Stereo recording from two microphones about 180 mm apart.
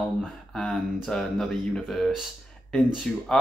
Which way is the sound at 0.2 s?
5° left (ahead or behind).